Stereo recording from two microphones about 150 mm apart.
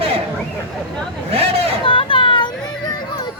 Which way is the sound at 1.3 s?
40° right (ahead or behind).